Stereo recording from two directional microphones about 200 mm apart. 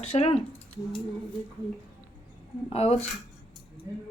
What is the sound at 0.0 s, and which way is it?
Speech, 30° left (ahead or behind).